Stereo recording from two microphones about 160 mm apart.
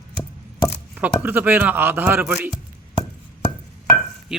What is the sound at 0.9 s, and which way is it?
Speech, 10° right (ahead or behind).